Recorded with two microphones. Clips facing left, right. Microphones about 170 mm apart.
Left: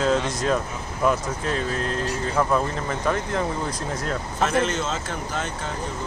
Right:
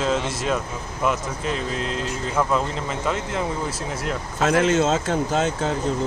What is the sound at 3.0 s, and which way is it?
Speech, 10° right (ahead or behind).